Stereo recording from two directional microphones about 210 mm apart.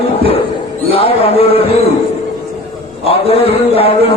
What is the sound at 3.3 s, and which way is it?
Speech, 30° left (ahead or behind).